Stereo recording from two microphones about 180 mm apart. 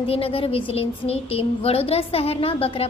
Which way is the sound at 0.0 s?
30° left (ahead or behind).